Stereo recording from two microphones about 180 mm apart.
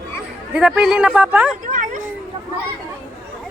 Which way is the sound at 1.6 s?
45° right (ahead or behind).